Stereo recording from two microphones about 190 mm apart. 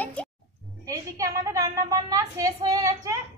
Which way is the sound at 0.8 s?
15° right (ahead or behind).